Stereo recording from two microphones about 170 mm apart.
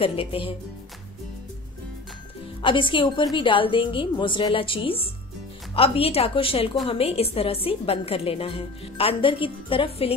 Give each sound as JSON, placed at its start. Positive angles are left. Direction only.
{"t": 0.0, "sound": "a woman's voice", "side_deg": 35}
{"t": 2.6, "sound": "a woman's voice", "side_deg": 30}